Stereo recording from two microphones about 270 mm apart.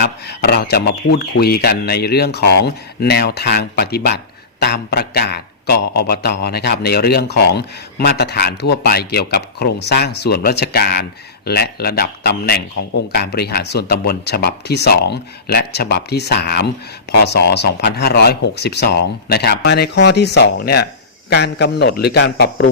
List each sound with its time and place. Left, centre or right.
0.0 s speech: left